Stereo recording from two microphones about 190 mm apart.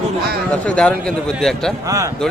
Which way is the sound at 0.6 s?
5° left (ahead or behind).